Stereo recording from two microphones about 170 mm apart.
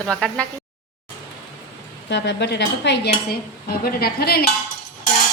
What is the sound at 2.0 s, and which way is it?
Speech, 90° left.